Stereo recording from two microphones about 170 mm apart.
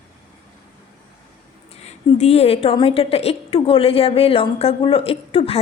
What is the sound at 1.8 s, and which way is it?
A woman's voice, 40° left (ahead or behind).